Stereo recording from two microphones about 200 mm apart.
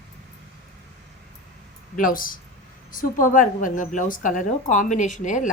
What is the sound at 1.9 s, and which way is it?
A woman's voice, 45° left (ahead or behind).